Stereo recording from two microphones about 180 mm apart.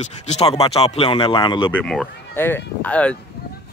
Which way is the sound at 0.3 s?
35° left (ahead or behind).